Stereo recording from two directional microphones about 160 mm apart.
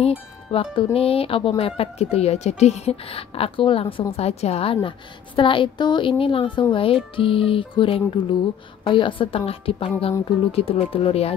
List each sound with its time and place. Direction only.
0.0 s music: 35° left (ahead or behind)
0.9 s a woman's voice: 35° left (ahead or behind)